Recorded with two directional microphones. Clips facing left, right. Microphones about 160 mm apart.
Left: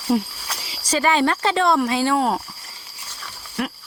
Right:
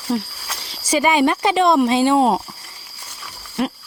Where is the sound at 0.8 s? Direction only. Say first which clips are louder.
Right 3 dB; 15° right (ahead or behind).